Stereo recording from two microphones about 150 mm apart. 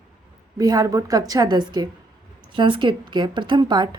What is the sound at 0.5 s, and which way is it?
A woman's voice, 25° right (ahead or behind).